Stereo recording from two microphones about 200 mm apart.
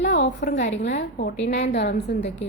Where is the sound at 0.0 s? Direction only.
65° left (ahead or behind).